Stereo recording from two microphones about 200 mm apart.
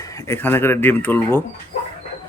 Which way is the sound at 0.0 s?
15° left (ahead or behind).